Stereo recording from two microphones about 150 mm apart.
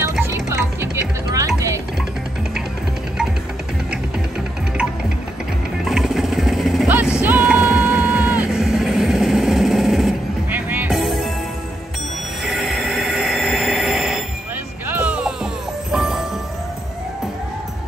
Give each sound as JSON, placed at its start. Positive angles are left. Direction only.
{"t": 0.2, "sound": "music", "side_deg": -15}
{"t": 5.9, "sound": "vehicle", "side_deg": 0}
{"t": 7.2, "sound": "music", "side_deg": -10}
{"t": 11.0, "sound": "music", "side_deg": 0}
{"t": 12.4, "sound": "a sound", "side_deg": 0}
{"t": 14.9, "sound": "music", "side_deg": -10}